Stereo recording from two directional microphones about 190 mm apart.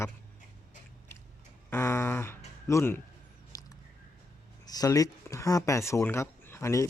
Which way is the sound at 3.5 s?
20° left (ahead or behind).